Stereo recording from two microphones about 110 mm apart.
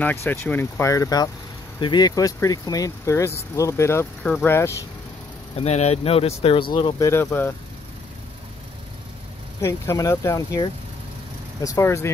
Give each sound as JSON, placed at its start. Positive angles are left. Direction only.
{"t": 0.0, "sound": "speech", "side_deg": 20}
{"t": 4.2, "sound": "speech", "side_deg": 15}
{"t": 5.6, "sound": "speech", "side_deg": 75}
{"t": 7.0, "sound": "speech", "side_deg": 25}
{"t": 9.6, "sound": "speech", "side_deg": 25}